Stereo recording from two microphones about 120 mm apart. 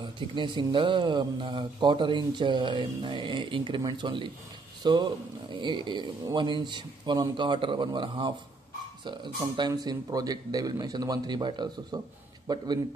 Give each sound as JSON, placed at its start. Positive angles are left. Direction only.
{"t": 0.0, "sound": "speech", "side_deg": -40}
{"t": 9.6, "sound": "speech", "side_deg": -35}